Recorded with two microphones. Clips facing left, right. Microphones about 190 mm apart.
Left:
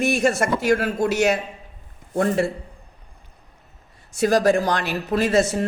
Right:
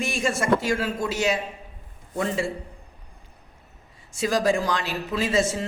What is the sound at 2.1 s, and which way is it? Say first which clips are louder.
Speech: left 6 dB; 50° left (ahead or behind).